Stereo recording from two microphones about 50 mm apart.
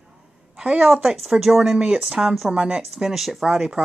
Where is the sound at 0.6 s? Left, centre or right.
Centre.